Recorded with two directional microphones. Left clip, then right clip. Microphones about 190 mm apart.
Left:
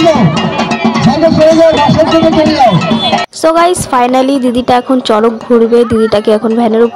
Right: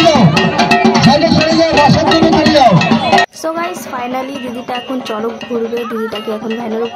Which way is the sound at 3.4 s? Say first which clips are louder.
Left 11 dB; 35° left (ahead or behind).